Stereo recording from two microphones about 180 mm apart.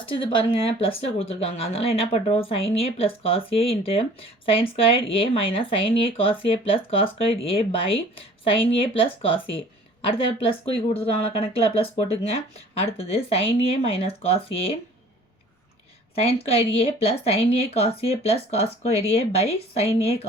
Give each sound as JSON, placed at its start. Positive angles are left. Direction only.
{"t": 0.0, "sound": "speech", "side_deg": 30}
{"t": 16.1, "sound": "speech", "side_deg": 35}